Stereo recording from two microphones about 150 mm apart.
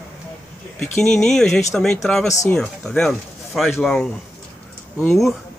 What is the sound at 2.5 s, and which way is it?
Speech, 5° left (ahead or behind).